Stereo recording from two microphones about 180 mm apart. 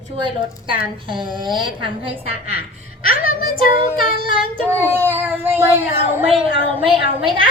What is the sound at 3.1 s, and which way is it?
Speech, 55° left (ahead or behind).